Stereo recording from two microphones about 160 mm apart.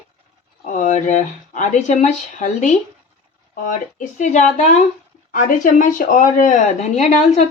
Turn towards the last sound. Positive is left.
turn(degrees=45)  # may be behind; listen again after turning